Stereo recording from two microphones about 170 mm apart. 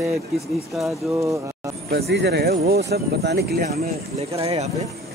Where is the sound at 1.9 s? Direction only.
75° right (ahead or behind).